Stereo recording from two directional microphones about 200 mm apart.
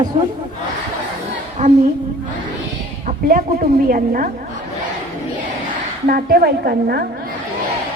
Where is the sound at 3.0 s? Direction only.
45° right (ahead or behind).